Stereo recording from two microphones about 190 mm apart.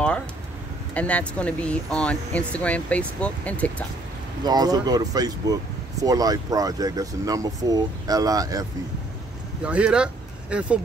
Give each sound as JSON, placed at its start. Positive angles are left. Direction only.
{"t": 0.9, "sound": "speech", "side_deg": 5}
{"t": 4.5, "sound": "speech", "side_deg": -20}
{"t": 9.6, "sound": "speech", "side_deg": -5}